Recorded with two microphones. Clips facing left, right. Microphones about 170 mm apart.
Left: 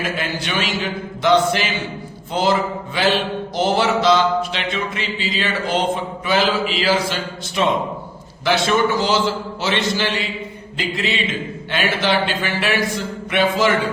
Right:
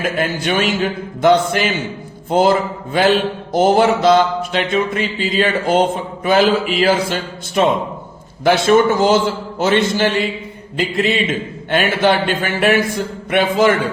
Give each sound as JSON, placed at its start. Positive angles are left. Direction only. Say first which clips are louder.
{"t": 0.0, "sound": "a man's voice", "louder": "right 5 dB", "side_deg": -50}